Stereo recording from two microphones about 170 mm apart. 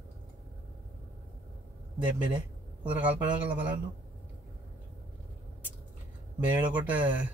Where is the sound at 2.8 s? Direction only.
10° right (ahead or behind).